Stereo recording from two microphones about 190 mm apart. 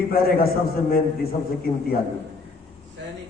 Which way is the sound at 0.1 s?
50° left (ahead or behind).